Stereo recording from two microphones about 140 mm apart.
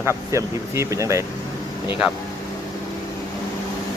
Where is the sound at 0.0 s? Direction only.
20° right (ahead or behind).